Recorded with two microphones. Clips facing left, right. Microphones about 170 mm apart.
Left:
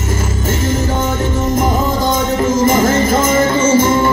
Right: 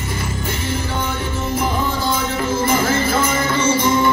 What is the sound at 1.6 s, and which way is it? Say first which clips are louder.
Music: left 4 dB; 45° left (ahead or behind).